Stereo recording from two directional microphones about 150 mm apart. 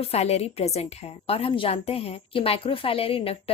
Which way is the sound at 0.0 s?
45° left (ahead or behind).